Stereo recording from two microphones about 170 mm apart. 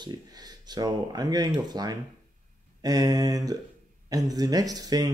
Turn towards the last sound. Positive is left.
turn(degrees=-20)  # may be behind; listen again after turning